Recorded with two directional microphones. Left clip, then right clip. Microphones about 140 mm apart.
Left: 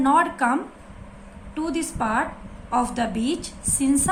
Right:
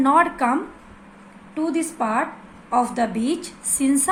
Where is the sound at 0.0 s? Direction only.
45° right (ahead or behind).